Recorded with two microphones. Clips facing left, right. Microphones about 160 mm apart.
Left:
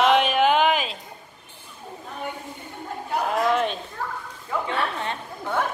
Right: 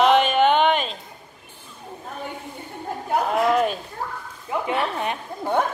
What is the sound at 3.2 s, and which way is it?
Chatter, centre (ahead or behind).